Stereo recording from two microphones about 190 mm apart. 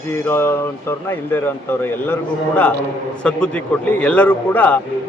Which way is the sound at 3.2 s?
5° left (ahead or behind).